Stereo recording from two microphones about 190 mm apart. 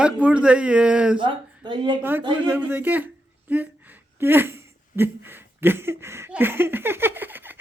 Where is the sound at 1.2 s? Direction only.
25° right (ahead or behind).